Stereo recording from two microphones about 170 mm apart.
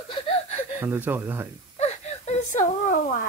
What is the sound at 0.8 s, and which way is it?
Speech, 10° right (ahead or behind).